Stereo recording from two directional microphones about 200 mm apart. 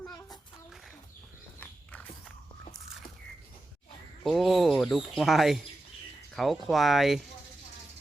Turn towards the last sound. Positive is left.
turn(degrees=0)  # may be behind; listen again after turning